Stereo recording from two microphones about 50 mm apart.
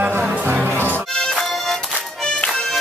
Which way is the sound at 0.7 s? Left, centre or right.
Right.